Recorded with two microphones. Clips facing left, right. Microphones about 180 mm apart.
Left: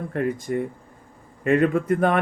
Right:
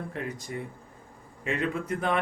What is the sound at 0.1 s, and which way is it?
Speech, 50° left (ahead or behind).